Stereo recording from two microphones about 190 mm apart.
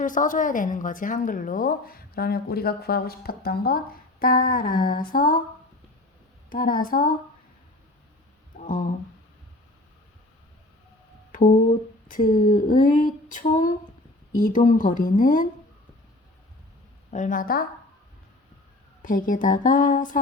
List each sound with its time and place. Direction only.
0.0 s a woman's voice: 45° left (ahead or behind)
6.5 s a woman's voice: 50° left (ahead or behind)
8.5 s a sound: 45° left (ahead or behind)
12.0 s a woman's voice: 45° left (ahead or behind)
17.1 s a woman's voice: 40° left (ahead or behind)
19.0 s a woman's voice: 45° left (ahead or behind)